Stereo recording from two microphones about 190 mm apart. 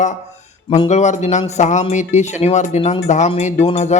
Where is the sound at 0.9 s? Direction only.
40° left (ahead or behind).